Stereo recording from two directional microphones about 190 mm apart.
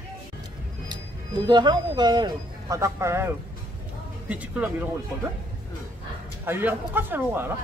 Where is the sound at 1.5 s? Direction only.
20° right (ahead or behind).